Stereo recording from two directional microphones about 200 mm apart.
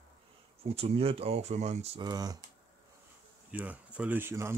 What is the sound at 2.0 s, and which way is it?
Speech, 20° right (ahead or behind).